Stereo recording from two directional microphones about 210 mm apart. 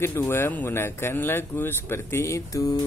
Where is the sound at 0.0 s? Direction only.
10° left (ahead or behind).